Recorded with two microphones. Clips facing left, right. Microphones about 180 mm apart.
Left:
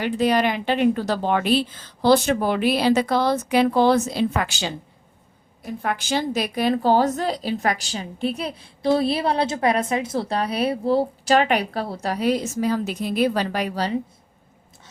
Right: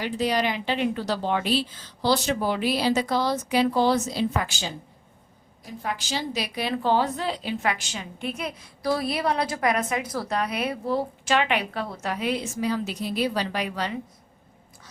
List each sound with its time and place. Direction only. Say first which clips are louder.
0.0 s a woman's voice: left 5 dB; 55° left (ahead or behind); by 4.7 s 70° left (ahead or behind)
5.6 s a woman's voice: left 5 dB; 60° left (ahead or behind); by 14.0 s 35° left (ahead or behind)